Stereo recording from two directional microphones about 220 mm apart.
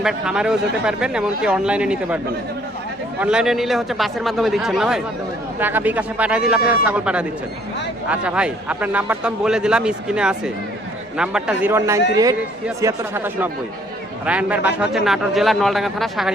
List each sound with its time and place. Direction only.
0.0 s speech: 5° right (ahead or behind)
3.2 s speech: 5° right (ahead or behind)